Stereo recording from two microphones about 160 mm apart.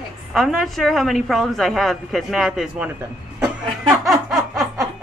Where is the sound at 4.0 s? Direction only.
Centre (ahead or behind).